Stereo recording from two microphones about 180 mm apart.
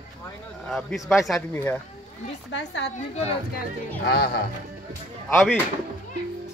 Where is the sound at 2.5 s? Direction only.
80° left.